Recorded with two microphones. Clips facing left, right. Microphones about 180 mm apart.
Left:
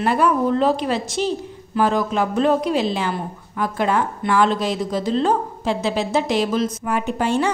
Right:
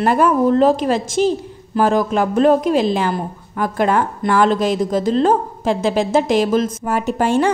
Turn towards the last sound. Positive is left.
turn(degrees=-50)  # may be behind; listen again after turning